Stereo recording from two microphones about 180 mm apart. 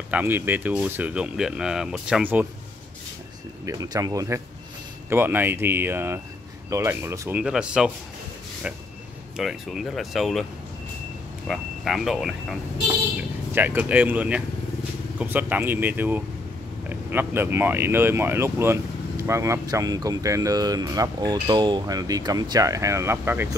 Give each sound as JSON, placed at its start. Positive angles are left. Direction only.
{"t": 0.1, "sound": "speech", "side_deg": -10}
{"t": 3.6, "sound": "speech", "side_deg": -20}
{"t": 11.4, "sound": "speech", "side_deg": 0}
{"t": 13.6, "sound": "speech", "side_deg": -10}